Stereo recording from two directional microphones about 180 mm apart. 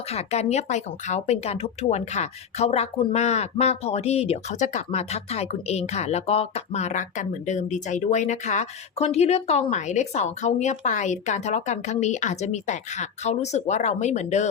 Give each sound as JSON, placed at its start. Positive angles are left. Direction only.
{"t": 0.1, "sound": "speech", "side_deg": 35}